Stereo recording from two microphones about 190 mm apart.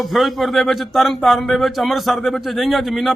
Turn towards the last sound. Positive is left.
turn(degrees=0)  # may be behind; listen again after turning